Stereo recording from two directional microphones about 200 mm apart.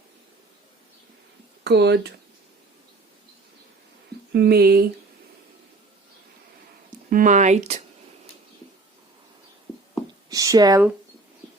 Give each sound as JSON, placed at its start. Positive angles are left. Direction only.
{"t": 1.6, "sound": "speech", "side_deg": -55}
{"t": 4.3, "sound": "speech", "side_deg": -55}
{"t": 7.1, "sound": "speech", "side_deg": -40}
{"t": 10.2, "sound": "speech", "side_deg": -15}